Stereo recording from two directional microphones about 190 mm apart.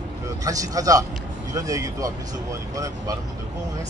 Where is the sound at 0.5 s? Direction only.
20° right (ahead or behind).